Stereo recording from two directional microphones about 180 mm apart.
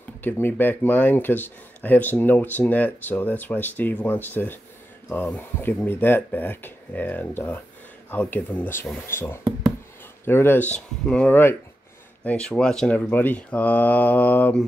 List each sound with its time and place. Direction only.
0.2 s speech: 10° left (ahead or behind)